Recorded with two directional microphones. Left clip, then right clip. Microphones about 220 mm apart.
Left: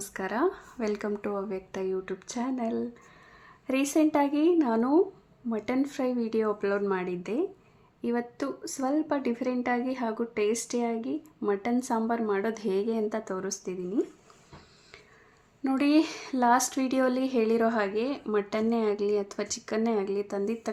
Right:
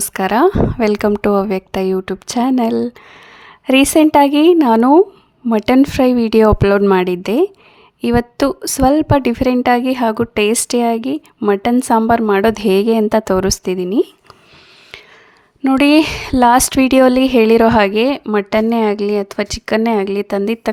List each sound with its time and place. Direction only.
0.0 s a woman's voice: 45° right (ahead or behind)
15.6 s a woman's voice: 45° right (ahead or behind)